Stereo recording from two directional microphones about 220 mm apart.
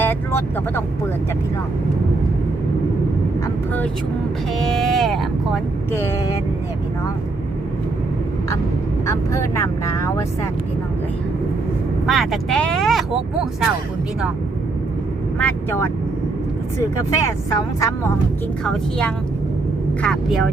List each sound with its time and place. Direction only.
0.0 s speech: 10° left (ahead or behind)
4.6 s speech: centre (ahead or behind)
5.9 s speech: 10° left (ahead or behind)
9.0 s speech: 15° left (ahead or behind)
12.0 s speech: centre (ahead or behind)
15.4 s speech: 10° left (ahead or behind)
18.6 s speech: 5° left (ahead or behind)